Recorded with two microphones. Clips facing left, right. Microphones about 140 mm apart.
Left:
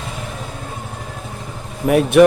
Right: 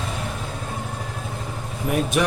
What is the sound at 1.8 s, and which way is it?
Speech, 65° left (ahead or behind).